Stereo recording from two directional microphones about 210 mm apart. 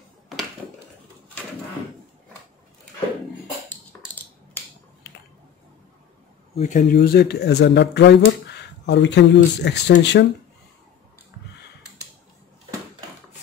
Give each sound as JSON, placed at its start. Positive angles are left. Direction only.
{"t": 6.5, "sound": "speech", "side_deg": 35}